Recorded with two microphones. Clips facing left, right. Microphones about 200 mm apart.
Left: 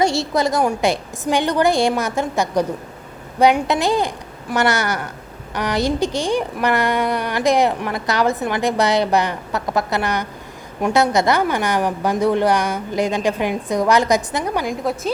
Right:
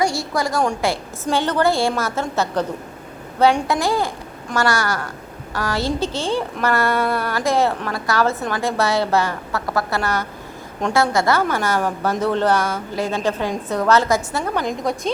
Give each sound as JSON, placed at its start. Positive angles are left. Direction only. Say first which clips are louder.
{"t": 0.0, "sound": "a woman's voice", "louder": "left 3 dB", "side_deg": 25}